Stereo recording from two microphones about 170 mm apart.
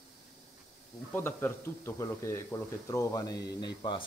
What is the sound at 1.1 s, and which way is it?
Speech, 15° left (ahead or behind).